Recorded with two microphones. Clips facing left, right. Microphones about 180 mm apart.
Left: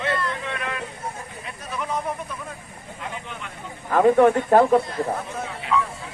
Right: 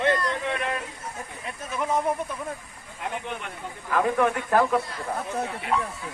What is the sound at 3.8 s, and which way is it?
Speech, 30° left (ahead or behind).